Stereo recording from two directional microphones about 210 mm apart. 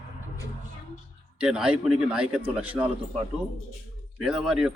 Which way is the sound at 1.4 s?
5° right (ahead or behind).